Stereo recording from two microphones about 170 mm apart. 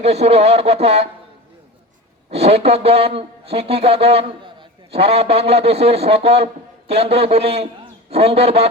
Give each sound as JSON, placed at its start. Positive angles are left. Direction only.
{"t": 0.0, "sound": "a man's voice", "side_deg": -40}
{"t": 2.3, "sound": "a man's voice", "side_deg": -40}